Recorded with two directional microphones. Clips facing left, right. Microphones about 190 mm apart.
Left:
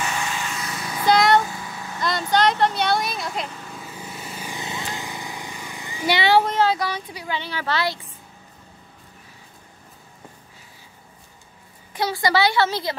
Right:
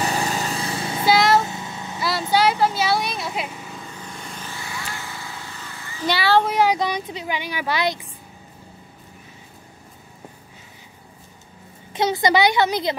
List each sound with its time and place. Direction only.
0.0 s vehicle: 35° right (ahead or behind)
1.0 s music: 5° right (ahead or behind)
1.4 s a sound: 25° right (ahead or behind)
2.0 s vehicle: 5° right (ahead or behind)
3.7 s vehicle: 5° left (ahead or behind)
6.4 s speech: 10° right (ahead or behind)
11.9 s a woman's voice: 20° right (ahead or behind)